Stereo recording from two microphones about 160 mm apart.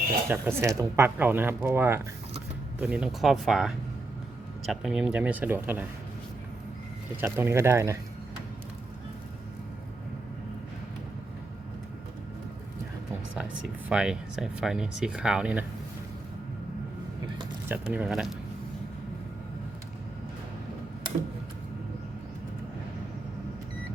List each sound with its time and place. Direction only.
0.3 s speech: 15° right (ahead or behind)
7.2 s speech: 15° right (ahead or behind)
13.3 s speech: 5° right (ahead or behind)
17.7 s speech: 10° right (ahead or behind)